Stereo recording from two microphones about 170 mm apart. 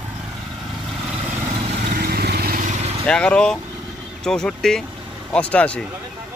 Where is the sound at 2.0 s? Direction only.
65° right (ahead or behind).